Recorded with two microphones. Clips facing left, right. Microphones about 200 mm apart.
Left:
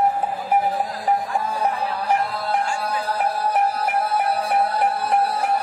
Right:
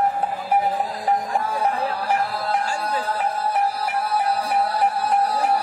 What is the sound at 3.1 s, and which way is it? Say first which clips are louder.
Music: left 1 dB; 40° left (ahead or behind).